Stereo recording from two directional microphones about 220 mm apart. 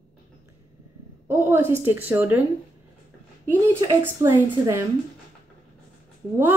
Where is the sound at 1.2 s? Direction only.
10° right (ahead or behind).